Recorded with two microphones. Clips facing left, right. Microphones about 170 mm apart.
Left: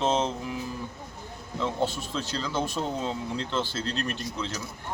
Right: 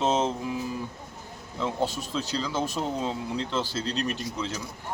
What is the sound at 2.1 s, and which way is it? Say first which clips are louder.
Speech: right 1 dB; 5° right (ahead or behind).